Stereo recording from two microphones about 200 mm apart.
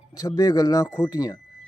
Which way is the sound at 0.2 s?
15° left (ahead or behind).